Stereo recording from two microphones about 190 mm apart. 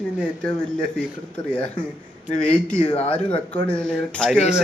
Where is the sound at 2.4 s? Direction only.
5° left (ahead or behind).